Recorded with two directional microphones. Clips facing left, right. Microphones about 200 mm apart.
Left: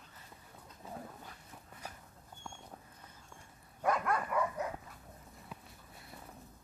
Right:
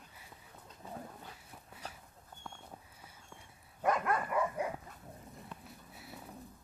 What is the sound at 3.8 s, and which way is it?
Dog, centre (ahead or behind).